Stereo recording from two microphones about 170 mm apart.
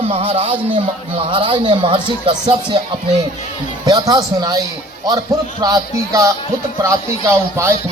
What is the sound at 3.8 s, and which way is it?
Speech, 20° right (ahead or behind).